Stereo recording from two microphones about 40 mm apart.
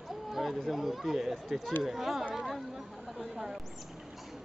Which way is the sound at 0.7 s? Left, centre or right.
Centre.